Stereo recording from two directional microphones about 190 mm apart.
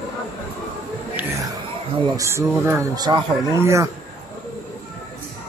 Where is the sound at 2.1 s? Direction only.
15° right (ahead or behind).